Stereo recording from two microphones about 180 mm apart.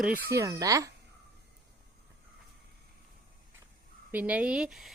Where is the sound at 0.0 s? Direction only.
10° right (ahead or behind).